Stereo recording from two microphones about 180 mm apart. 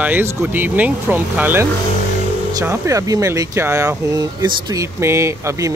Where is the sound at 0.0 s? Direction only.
10° right (ahead or behind).